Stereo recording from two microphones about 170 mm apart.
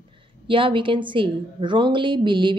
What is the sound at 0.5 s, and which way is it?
A woman's voice, 30° right (ahead or behind).